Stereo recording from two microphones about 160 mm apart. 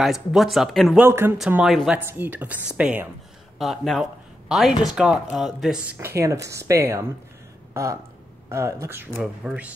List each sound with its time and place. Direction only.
0.0 s speech: centre (ahead or behind)
0.9 s a woman's voice: 15° right (ahead or behind)
1.5 s a woman's voice: 5° right (ahead or behind)